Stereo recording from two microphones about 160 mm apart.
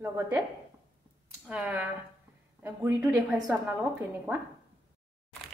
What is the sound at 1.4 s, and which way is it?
A woman's voice, 5° right (ahead or behind).